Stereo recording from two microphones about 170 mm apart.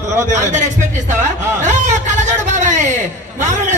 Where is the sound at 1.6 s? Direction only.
45° right (ahead or behind).